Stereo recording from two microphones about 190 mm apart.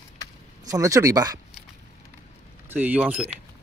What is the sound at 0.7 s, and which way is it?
Speech, 15° right (ahead or behind).